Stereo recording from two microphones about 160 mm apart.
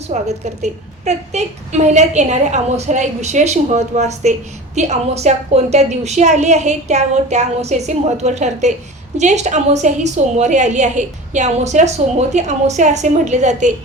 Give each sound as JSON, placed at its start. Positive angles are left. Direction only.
{"t": 0.1, "sound": "a woman's voice", "side_deg": -45}